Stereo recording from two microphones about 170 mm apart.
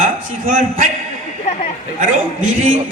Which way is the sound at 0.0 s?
50° right (ahead or behind).